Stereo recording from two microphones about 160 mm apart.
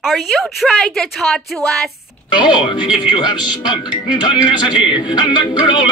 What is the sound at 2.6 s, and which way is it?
Speech, 30° left (ahead or behind).